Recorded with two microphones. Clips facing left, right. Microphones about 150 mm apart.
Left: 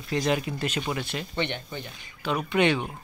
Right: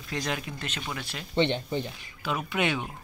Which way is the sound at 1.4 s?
30° right (ahead or behind).